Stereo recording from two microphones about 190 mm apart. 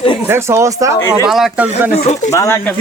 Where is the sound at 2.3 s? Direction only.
15° left (ahead or behind).